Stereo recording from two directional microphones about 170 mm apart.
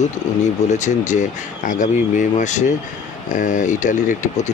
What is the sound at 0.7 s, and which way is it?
Speech, 45° left (ahead or behind).